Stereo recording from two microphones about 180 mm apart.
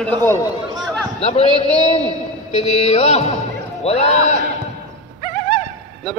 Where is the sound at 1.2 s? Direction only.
35° left (ahead or behind).